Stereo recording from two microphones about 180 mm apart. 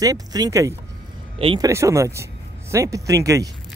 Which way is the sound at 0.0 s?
20° right (ahead or behind).